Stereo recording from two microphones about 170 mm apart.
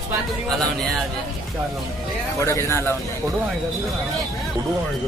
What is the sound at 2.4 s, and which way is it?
Speech, 15° left (ahead or behind).